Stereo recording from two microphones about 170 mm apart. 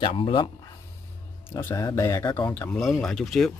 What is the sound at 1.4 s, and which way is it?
Speech, 15° left (ahead or behind).